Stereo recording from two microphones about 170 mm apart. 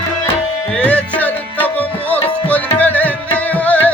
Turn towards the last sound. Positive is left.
turn(degrees=10)  # may be behind; listen again after turning